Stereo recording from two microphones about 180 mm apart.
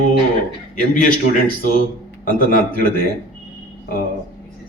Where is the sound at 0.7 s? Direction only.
50° left (ahead or behind).